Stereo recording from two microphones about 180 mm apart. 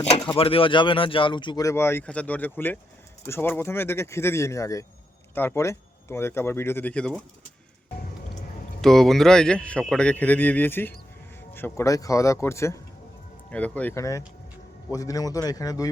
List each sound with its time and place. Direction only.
0.1 s speech: 30° left (ahead or behind); by 7.2 s 5° left (ahead or behind)
8.8 s speech: centre (ahead or behind); by 15.9 s 20° left (ahead or behind)